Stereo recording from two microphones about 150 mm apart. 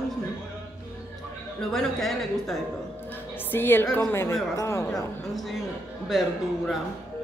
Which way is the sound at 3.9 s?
15° left (ahead or behind).